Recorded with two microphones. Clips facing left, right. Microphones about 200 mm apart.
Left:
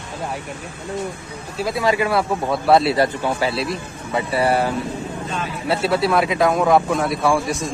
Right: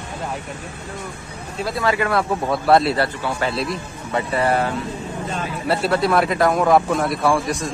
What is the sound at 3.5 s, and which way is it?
Speech, 5° left (ahead or behind).